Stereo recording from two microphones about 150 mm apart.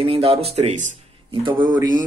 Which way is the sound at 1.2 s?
35° right (ahead or behind).